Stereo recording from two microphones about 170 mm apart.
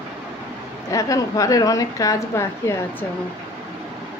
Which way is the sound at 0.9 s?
20° left (ahead or behind).